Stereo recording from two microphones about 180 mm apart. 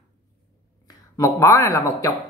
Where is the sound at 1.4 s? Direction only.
15° left (ahead or behind).